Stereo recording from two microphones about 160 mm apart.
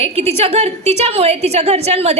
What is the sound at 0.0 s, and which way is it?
A woman's voice, 40° right (ahead or behind).